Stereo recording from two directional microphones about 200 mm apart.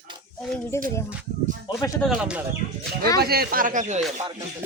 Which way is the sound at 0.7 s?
15° left (ahead or behind).